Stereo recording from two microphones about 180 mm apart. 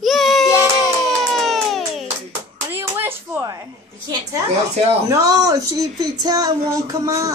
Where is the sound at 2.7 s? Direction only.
10° right (ahead or behind).